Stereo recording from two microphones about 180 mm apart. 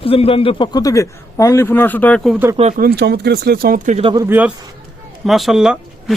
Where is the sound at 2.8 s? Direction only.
60° right (ahead or behind); by 4.1 s 40° right (ahead or behind).